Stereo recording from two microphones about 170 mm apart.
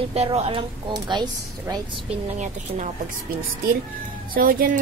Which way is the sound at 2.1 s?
45° right (ahead or behind).